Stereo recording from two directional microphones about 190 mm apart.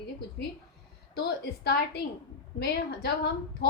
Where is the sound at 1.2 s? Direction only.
60° left (ahead or behind).